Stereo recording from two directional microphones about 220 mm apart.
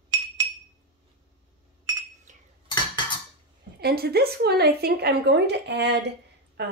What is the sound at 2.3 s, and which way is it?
Cutlery, 35° right (ahead or behind).